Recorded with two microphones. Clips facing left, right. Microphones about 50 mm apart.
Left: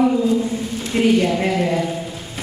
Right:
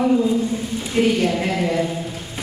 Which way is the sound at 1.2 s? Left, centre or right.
Left.